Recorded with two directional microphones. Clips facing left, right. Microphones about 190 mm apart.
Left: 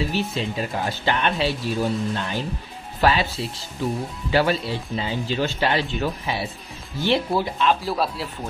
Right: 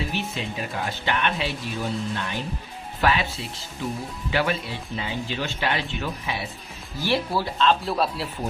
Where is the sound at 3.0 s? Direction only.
35° left (ahead or behind).